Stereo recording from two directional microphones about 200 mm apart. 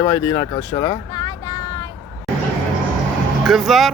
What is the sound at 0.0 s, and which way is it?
Speech, 20° left (ahead or behind).